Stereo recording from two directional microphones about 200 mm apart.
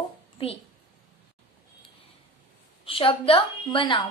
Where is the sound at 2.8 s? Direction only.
25° left (ahead or behind).